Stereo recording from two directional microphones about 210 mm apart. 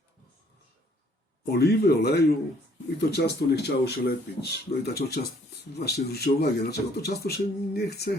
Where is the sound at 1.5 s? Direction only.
50° left (ahead or behind).